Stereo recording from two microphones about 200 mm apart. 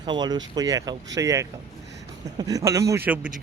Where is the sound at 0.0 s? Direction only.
20° right (ahead or behind).